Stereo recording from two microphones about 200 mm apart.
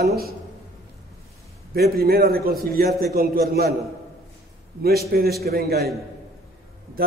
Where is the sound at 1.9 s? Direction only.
50° right (ahead or behind).